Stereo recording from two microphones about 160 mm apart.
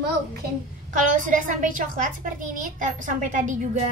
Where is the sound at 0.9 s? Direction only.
55° right (ahead or behind).